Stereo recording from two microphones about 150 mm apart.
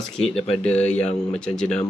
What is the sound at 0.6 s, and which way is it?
Speech, 10° left (ahead or behind).